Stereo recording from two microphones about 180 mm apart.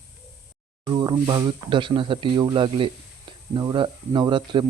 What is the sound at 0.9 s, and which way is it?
Speech, 25° right (ahead or behind).